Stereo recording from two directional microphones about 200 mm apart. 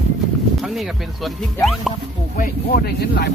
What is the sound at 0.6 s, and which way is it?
Speech, centre (ahead or behind).